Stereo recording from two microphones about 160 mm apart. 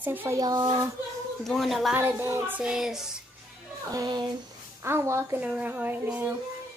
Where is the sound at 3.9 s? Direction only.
25° right (ahead or behind).